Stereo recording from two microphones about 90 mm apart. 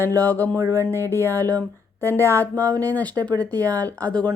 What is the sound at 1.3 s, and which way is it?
Speech, 25° left (ahead or behind).